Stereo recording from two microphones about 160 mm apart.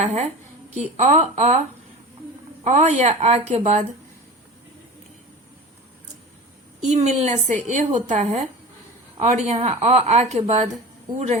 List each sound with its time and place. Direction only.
0.0 s a woman's voice: 45° right (ahead or behind)
2.6 s a woman's voice: 45° right (ahead or behind)
6.8 s a woman's voice: 45° right (ahead or behind)